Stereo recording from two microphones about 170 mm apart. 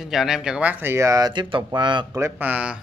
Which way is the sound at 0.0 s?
Centre (ahead or behind).